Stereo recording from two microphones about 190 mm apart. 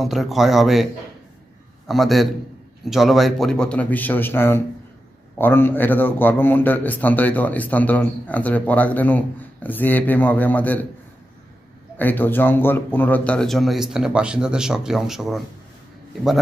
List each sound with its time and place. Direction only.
0.0 s speech: centre (ahead or behind)
1.9 s a man's voice: centre (ahead or behind)
12.0 s speech: 10° left (ahead or behind)